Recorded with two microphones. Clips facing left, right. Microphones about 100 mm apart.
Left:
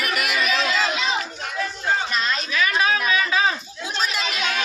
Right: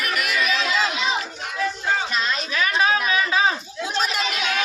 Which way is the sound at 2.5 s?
35° right (ahead or behind).